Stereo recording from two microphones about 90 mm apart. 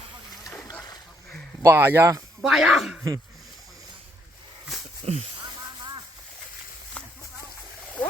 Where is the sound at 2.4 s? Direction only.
Centre (ahead or behind).